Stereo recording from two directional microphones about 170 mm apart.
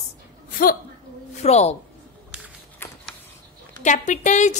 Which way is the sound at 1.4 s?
40° left (ahead or behind).